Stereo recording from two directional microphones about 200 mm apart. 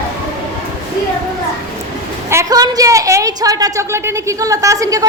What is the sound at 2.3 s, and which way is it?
A woman's voice, 15° right (ahead or behind).